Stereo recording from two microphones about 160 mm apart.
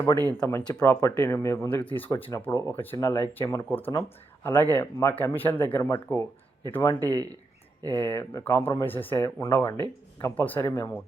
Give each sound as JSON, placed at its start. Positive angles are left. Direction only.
{"t": 0.3, "sound": "speech", "side_deg": 15}